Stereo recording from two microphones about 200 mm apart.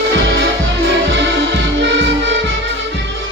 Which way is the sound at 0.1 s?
60° right (ahead or behind).